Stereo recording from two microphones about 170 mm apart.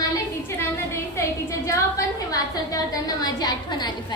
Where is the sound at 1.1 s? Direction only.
20° left (ahead or behind).